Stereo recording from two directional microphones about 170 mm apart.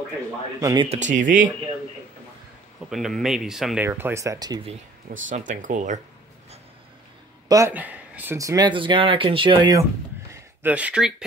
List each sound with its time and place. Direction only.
0.6 s speech: 20° right (ahead or behind)
0.8 s speech: 45° right (ahead or behind)
2.9 s speech: centre (ahead or behind)
3.8 s speech: 15° right (ahead or behind)
5.3 s speech: 50° right (ahead or behind)
7.4 s speech: 20° right (ahead or behind)
7.7 s speech: 10° right (ahead or behind); by 9.8 s 25° right (ahead or behind)
10.3 s speech: 10° right (ahead or behind)